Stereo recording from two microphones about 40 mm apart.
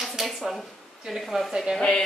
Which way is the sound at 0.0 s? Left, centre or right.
Centre.